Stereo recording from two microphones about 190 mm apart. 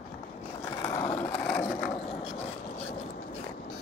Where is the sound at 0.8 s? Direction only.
15° left (ahead or behind).